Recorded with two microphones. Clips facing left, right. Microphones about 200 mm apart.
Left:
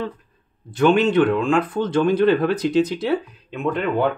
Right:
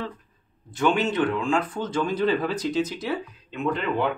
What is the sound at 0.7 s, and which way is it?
Speech, 60° left (ahead or behind).